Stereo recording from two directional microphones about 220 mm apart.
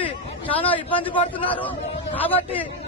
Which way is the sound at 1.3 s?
5° left (ahead or behind).